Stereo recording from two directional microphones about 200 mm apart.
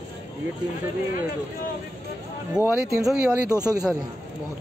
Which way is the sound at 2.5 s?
5° right (ahead or behind).